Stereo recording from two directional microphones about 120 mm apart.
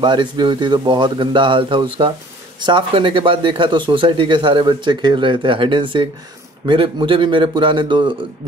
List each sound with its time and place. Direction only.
0.0 s speech: 40° right (ahead or behind)